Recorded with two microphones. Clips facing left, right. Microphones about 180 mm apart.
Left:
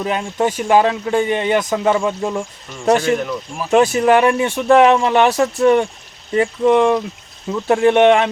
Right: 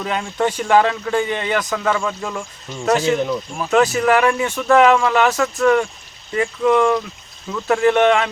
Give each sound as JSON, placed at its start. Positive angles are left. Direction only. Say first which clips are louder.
{"t": 0.0, "sound": "speech", "louder": "left 2 dB", "side_deg": 15}
{"t": 2.4, "sound": "speech", "louder": "left 3 dB", "side_deg": 15}
{"t": 3.0, "sound": "speech", "louder": "even", "side_deg": -5}
{"t": 3.7, "sound": "speech", "louder": "left 3 dB", "side_deg": 25}